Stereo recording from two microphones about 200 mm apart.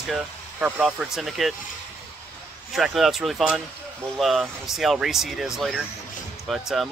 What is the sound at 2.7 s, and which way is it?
Speech, centre (ahead or behind).